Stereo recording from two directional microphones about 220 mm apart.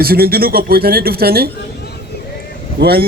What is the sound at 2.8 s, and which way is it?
Speech, 45° right (ahead or behind).